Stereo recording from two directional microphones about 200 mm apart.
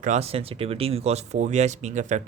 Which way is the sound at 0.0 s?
35° right (ahead or behind).